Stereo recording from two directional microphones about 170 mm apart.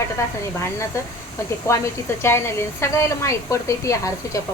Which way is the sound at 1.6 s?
15° left (ahead or behind).